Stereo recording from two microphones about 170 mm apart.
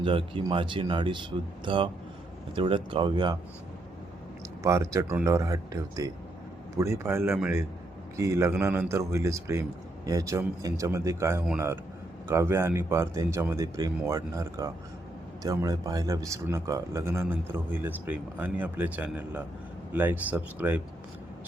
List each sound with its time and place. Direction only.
0.0 s speech: 30° right (ahead or behind)
4.6 s a man's voice: 15° right (ahead or behind)